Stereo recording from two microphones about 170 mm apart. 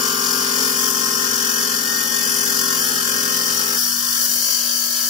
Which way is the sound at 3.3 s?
25° right (ahead or behind).